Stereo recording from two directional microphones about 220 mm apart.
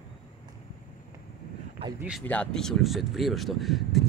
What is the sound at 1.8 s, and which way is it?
Speech, 25° right (ahead or behind).